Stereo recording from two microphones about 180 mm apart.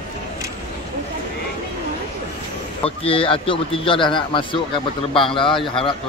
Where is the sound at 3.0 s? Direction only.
30° left (ahead or behind).